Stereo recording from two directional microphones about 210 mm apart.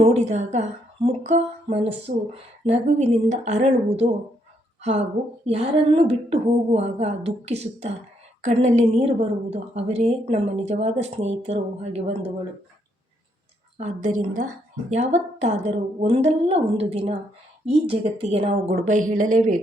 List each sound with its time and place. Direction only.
0.0 s a woman's voice: 30° right (ahead or behind)
1.0 s music: 30° right (ahead or behind)
2.1 s a woman's voice: 35° right (ahead or behind)
13.7 s a woman's voice: 35° right (ahead or behind)